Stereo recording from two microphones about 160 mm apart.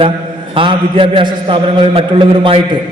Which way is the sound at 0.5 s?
35° right (ahead or behind).